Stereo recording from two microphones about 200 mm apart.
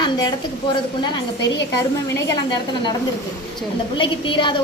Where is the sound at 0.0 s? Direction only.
20° left (ahead or behind).